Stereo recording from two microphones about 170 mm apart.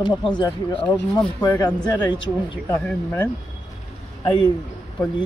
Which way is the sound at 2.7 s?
10° left (ahead or behind).